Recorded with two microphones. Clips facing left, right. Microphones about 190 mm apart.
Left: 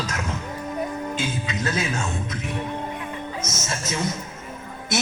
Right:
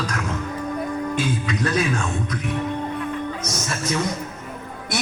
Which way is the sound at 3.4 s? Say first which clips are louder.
Right 3 dB; 25° left (ahead or behind).